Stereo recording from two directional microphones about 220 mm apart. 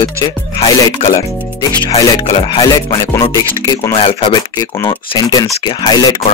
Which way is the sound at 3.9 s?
25° left (ahead or behind).